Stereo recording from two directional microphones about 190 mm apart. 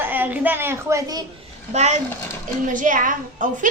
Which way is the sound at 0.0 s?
10° right (ahead or behind).